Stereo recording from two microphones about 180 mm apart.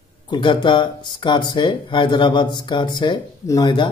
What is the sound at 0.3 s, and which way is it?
Speech, 25° left (ahead or behind).